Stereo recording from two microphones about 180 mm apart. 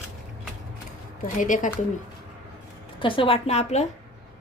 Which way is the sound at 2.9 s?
30° left (ahead or behind).